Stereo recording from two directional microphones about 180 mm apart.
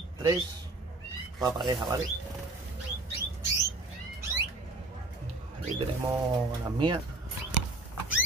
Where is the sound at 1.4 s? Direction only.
25° right (ahead or behind).